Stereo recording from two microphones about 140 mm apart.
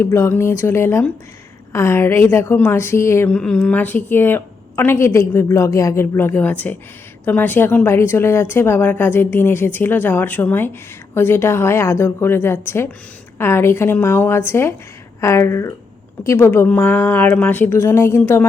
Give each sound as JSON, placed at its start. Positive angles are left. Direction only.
{"t": 0.0, "sound": "speech", "side_deg": 20}